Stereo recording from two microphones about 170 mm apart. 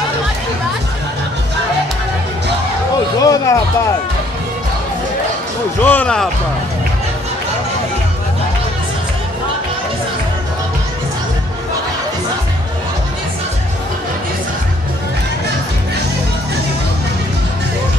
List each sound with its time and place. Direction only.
3.2 s speech: 20° left (ahead or behind)
5.8 s speech: 10° left (ahead or behind)